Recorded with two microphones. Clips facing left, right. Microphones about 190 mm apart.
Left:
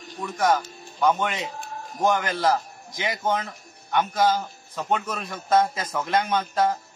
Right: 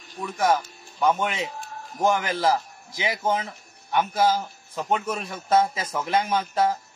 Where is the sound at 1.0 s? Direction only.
5° right (ahead or behind).